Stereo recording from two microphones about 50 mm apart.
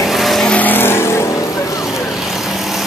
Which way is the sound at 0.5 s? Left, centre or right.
Left.